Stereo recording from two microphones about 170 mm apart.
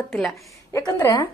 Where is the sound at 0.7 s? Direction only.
15° left (ahead or behind).